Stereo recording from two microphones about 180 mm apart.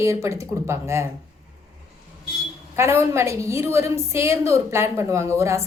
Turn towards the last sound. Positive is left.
turn(degrees=-15)  # may be behind; listen again after turning